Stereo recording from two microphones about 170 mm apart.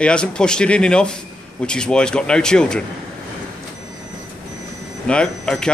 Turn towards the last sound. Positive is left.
turn(degrees=5)  # may be behind; listen again after turning